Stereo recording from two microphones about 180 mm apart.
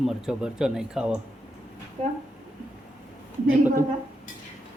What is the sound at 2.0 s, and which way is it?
Speech, 30° right (ahead or behind).